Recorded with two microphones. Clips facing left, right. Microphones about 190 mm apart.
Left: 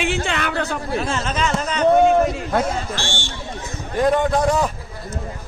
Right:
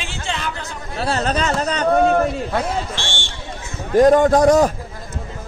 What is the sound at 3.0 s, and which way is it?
Speech, 10° left (ahead or behind).